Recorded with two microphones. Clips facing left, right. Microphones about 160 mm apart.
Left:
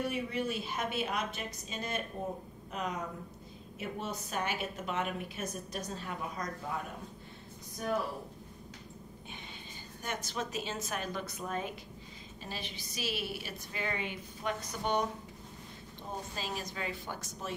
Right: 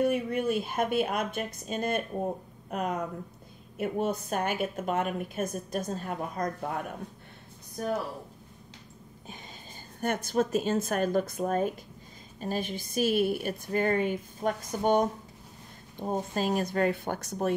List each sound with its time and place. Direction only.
0.0 s a woman's voice: 50° right (ahead or behind)
7.8 s a woman's voice: 45° right (ahead or behind)
9.9 s a woman's voice: 55° right (ahead or behind)